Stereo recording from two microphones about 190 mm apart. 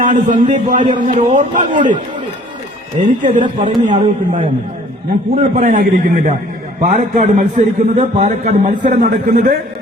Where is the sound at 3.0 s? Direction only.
40° right (ahead or behind).